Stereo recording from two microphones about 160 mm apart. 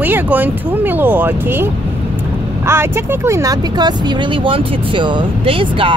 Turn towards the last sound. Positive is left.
turn(degrees=-35)  # may be behind; listen again after turning